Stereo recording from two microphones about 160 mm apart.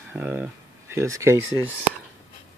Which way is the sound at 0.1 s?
10° right (ahead or behind).